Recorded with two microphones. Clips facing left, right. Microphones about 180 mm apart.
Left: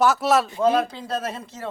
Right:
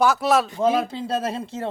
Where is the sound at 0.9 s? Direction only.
30° right (ahead or behind).